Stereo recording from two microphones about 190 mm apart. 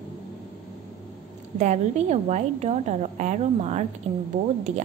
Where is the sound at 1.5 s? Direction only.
35° right (ahead or behind).